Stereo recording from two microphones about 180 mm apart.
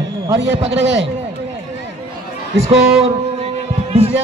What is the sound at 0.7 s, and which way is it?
Speech, 85° right.